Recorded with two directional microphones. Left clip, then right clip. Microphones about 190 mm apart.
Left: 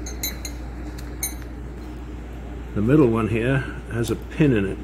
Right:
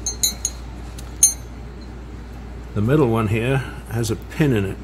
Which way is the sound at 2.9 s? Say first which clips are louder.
Even; 65° right (ahead or behind).